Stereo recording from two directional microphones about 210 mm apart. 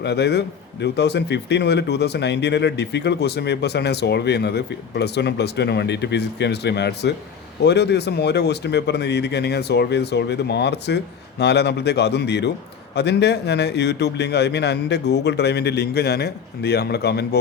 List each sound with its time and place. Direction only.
0.0 s speech: 55° left (ahead or behind)